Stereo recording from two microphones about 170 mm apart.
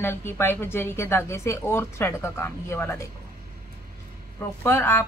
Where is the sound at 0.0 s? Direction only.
15° left (ahead or behind).